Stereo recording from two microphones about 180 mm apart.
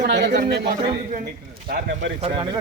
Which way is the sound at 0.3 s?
65° right (ahead or behind).